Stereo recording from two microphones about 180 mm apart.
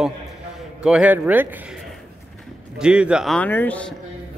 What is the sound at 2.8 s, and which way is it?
A man's voice, 5° right (ahead or behind).